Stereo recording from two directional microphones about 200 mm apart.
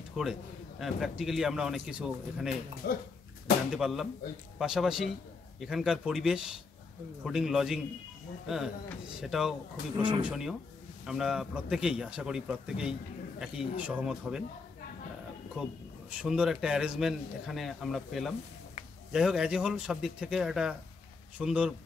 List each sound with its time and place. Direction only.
0.1 s a man's voice: centre (ahead or behind)
2.8 s dog: 55° left (ahead or behind)
3.7 s a man's voice: centre (ahead or behind)
9.9 s speech: 25° right (ahead or behind)
10.2 s a man's voice: 5° right (ahead or behind)
15.6 s a man's voice: 5° right (ahead or behind)